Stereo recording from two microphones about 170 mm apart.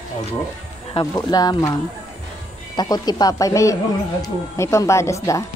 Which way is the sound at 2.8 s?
25° left (ahead or behind).